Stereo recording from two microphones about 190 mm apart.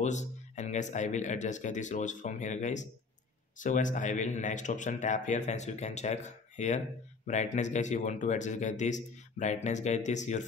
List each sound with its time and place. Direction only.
0.0 s speech: 40° left (ahead or behind)